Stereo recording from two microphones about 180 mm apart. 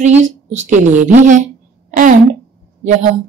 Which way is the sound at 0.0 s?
40° right (ahead or behind).